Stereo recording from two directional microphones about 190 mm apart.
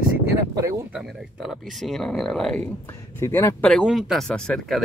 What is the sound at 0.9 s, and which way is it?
Speech, centre (ahead or behind).